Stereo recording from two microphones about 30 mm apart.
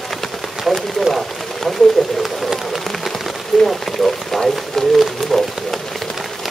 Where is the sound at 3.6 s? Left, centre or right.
Centre.